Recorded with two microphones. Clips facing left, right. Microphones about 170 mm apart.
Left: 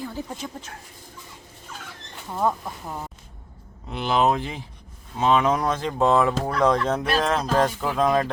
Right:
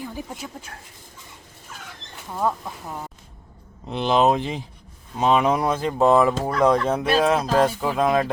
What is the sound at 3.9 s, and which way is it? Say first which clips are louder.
Speech: right 3 dB; 25° right (ahead or behind).